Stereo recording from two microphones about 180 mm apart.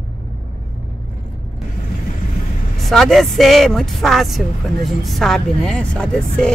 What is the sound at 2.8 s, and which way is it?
Speech, centre (ahead or behind).